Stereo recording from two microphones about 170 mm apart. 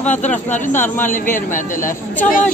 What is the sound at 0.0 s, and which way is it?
Speech, 45° left (ahead or behind).